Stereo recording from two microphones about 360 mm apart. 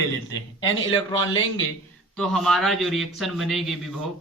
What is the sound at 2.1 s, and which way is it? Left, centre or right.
A man's voice, centre.